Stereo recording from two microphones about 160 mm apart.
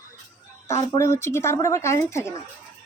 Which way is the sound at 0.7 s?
15° left (ahead or behind).